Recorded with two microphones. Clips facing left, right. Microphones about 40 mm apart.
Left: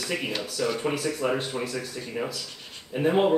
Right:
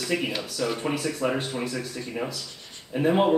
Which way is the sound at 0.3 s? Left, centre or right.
Centre.